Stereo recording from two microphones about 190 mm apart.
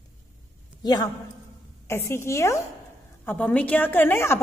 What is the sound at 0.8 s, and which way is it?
A man's voice, 20° left (ahead or behind).